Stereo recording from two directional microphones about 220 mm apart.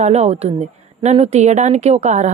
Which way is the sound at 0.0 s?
30° right (ahead or behind).